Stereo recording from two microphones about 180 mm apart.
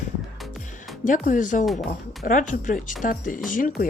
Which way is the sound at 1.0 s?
45° left (ahead or behind).